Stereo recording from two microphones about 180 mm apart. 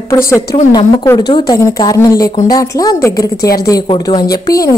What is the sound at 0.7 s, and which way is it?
A woman's voice, 20° left (ahead or behind).